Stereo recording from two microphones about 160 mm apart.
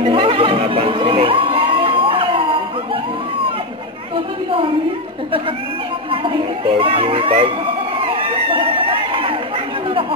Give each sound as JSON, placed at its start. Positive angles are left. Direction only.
{"t": 0.0, "sound": "music", "side_deg": -35}
{"t": 6.2, "sound": "speech", "side_deg": -35}
{"t": 8.0, "sound": "crowd", "side_deg": -35}